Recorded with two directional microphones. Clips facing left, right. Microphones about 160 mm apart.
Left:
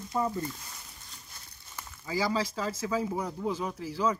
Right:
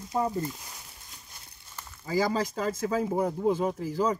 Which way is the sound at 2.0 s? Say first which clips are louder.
Right 3 dB; 45° right (ahead or behind).